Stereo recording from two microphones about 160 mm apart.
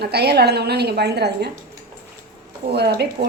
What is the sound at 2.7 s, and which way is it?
Speech, 90° right.